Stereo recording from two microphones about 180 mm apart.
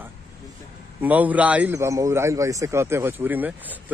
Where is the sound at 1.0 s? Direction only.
10° right (ahead or behind).